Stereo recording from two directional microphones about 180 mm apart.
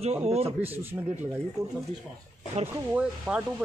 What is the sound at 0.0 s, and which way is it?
Speech, 35° right (ahead or behind).